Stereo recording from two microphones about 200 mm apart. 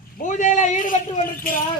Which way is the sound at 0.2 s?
40° left (ahead or behind).